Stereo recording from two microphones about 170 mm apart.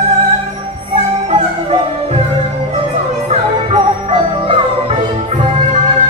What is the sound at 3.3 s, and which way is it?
Music, 35° right (ahead or behind).